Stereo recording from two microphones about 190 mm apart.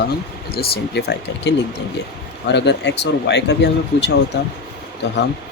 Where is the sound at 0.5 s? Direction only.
55° left (ahead or behind).